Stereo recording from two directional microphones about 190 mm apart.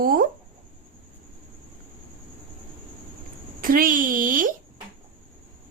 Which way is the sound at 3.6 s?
50° right (ahead or behind).